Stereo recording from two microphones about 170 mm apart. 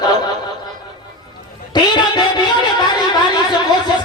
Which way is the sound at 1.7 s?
25° left (ahead or behind).